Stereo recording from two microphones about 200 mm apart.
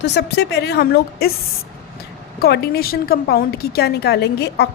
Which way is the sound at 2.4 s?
50° left (ahead or behind).